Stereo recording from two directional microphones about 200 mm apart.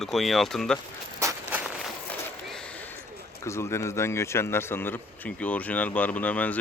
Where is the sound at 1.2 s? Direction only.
15° right (ahead or behind).